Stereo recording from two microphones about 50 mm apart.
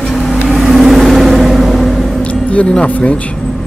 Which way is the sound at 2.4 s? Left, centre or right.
Left.